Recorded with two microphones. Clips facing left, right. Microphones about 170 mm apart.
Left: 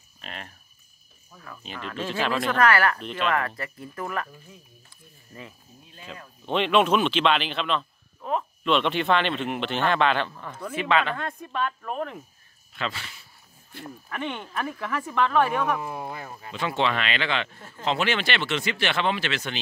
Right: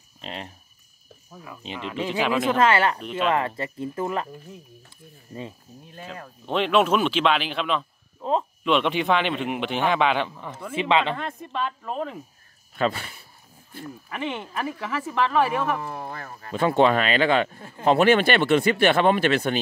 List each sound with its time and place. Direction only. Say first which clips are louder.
0.2 s speech: right 5 dB; 25° right (ahead or behind)
3.0 s speech: right 3 dB; 10° right (ahead or behind)
3.3 s speech: right 3 dB; 25° right (ahead or behind)
5.3 s speech: right 7 dB; 15° right (ahead or behind)
8.2 s a sound: right 4 dB; 25° right (ahead or behind)
8.6 s speech: right 1 dB; 10° right (ahead or behind)
10.8 s speech: right 2 dB; 25° right (ahead or behind)
11.1 s speech: even; centre (ahead or behind)
12.7 s speech: right 8 dB; 45° right (ahead or behind)
14.0 s speech: right 2 dB; 5° right (ahead or behind)
15.8 s speech: even; 10° left (ahead or behind)
16.5 s speech: right 7 dB; 50° right (ahead or behind)